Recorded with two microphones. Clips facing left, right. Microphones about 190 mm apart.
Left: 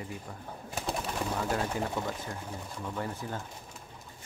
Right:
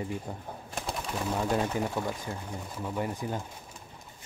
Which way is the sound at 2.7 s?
15° right (ahead or behind).